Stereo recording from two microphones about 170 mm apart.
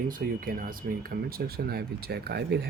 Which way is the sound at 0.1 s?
55° right (ahead or behind).